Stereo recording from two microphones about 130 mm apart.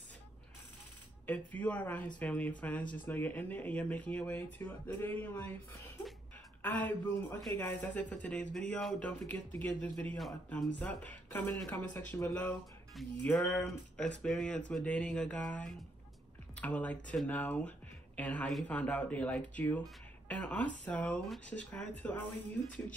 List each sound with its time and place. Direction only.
1.2 s speech: 10° left (ahead or behind)